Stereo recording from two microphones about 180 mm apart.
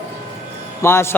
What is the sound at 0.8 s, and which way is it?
Speech, 15° left (ahead or behind).